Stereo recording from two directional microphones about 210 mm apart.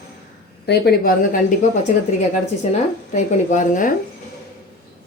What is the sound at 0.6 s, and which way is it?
Speech, 50° left (ahead or behind).